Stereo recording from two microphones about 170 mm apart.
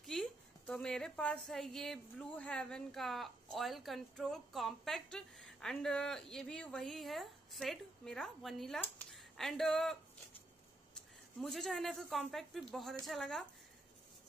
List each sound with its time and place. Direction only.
0.0 s a woman's voice: centre (ahead or behind)
9.1 s a sound: centre (ahead or behind)
11.0 s a woman's voice: 5° left (ahead or behind)